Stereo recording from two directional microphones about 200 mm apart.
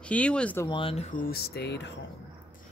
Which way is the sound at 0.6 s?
25° left (ahead or behind).